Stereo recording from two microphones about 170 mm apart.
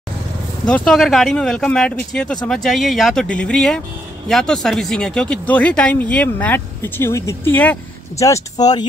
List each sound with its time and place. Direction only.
0.7 s speech: 5° left (ahead or behind); by 8.8 s 20° left (ahead or behind)